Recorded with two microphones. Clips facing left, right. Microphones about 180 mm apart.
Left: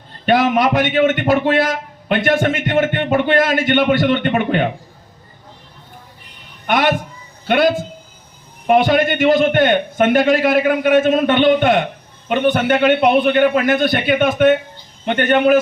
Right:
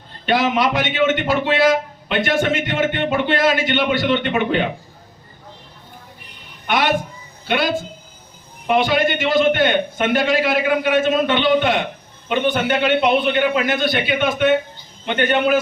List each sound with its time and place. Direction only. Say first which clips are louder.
0.3 s a man's voice: left 4 dB; 50° left (ahead or behind)
7.4 s a man's voice: left 5 dB; 50° left (ahead or behind)